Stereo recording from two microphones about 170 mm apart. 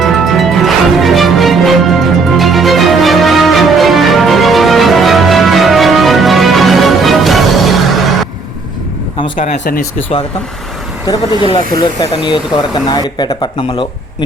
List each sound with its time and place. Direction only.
0.0 s music: centre (ahead or behind)
9.4 s speech: 55° left (ahead or behind)
11.1 s speech: 30° left (ahead or behind)